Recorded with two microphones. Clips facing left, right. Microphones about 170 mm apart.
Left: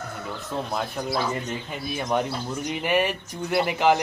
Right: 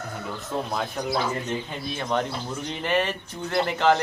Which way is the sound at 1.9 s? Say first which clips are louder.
Left 2 dB; 10° left (ahead or behind).